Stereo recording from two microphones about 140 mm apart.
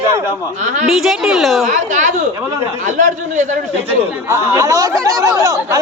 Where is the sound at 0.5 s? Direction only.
55° right (ahead or behind).